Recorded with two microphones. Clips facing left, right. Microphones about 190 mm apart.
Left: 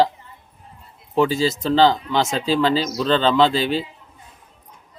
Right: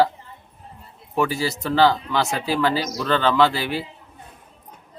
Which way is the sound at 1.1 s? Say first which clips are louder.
Left 4 dB; 20° left (ahead or behind).